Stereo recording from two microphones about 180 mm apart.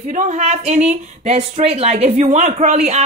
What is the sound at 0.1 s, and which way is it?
Speech, 40° right (ahead or behind).